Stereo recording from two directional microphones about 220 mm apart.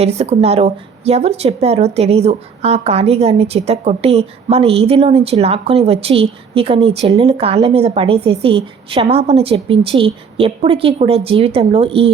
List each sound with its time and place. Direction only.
0.0 s speech: 30° right (ahead or behind)